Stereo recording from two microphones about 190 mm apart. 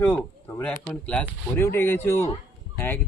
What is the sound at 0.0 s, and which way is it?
Speech, 10° left (ahead or behind).